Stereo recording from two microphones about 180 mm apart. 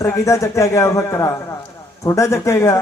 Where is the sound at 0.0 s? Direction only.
15° left (ahead or behind).